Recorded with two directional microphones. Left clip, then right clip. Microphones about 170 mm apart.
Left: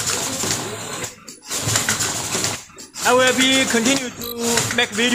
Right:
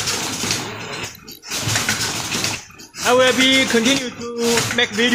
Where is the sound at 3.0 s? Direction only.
15° right (ahead or behind).